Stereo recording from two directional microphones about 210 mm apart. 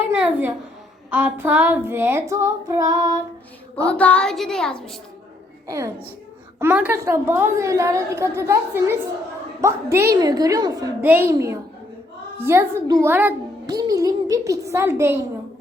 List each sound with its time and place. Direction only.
0.2 s a woman's voice: 10° right (ahead or behind)
3.8 s speech: 5° left (ahead or behind)
5.6 s a woman's voice: 15° right (ahead or behind)